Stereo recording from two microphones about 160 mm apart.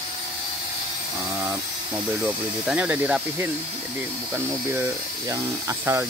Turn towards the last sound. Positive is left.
turn(degrees=-20)  # may be behind; listen again after turning